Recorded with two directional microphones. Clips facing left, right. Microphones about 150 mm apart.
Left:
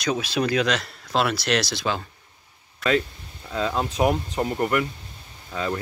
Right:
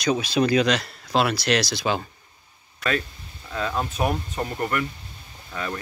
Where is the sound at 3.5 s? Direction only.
20° left (ahead or behind).